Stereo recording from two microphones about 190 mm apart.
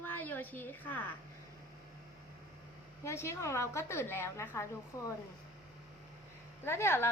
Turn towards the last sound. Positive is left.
turn(degrees=15)  # may be behind; listen again after turning